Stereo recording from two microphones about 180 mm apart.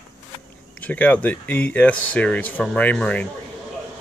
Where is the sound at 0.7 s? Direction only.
10° left (ahead or behind).